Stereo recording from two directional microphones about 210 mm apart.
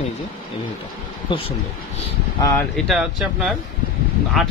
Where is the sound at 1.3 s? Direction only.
25° left (ahead or behind).